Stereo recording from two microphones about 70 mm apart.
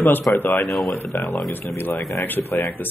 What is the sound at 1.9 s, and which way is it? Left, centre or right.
Speech, centre.